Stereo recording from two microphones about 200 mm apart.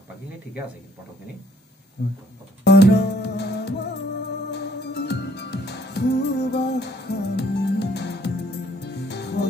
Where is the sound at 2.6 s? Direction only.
55° left (ahead or behind).